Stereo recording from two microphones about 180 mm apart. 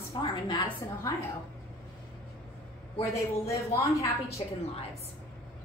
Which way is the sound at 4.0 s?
35° left (ahead or behind).